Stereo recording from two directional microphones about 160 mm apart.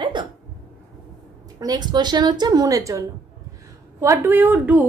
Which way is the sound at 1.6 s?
25° right (ahead or behind).